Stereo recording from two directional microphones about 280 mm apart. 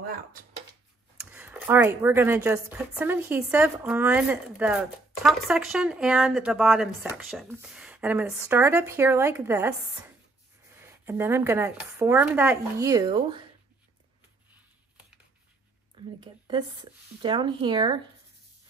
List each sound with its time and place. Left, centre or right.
0.0 s a sound: right
1.3 s a woman's voice: centre
10.8 s speech: centre
16.2 s speech: centre